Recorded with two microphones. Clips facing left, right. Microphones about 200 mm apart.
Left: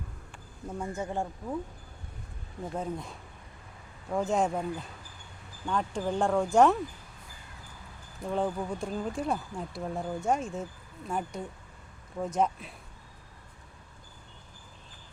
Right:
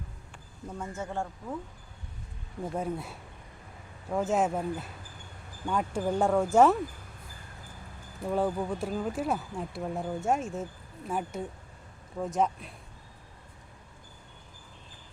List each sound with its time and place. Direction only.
0.7 s speech: 15° left (ahead or behind)
2.7 s speech: 10° right (ahead or behind)
8.3 s speech: 5° right (ahead or behind)